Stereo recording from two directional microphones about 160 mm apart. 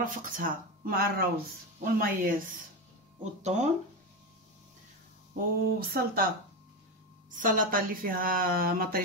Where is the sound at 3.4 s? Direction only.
45° right (ahead or behind).